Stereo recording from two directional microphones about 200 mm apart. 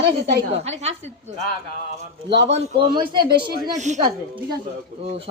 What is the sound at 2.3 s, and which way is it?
Speech, 60° right (ahead or behind).